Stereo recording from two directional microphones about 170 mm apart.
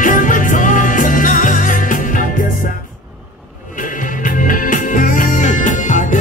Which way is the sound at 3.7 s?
50° left (ahead or behind).